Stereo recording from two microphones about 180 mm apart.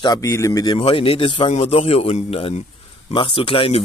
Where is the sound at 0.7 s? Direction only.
30° left (ahead or behind).